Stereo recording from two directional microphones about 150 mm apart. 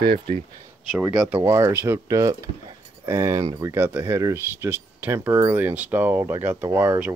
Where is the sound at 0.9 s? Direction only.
10° right (ahead or behind).